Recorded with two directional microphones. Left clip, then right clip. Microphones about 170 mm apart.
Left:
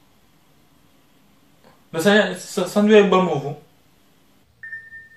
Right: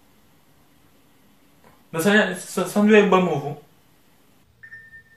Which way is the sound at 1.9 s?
10° right (ahead or behind).